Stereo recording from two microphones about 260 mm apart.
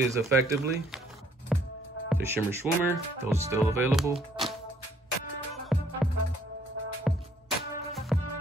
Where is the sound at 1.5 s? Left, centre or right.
Centre.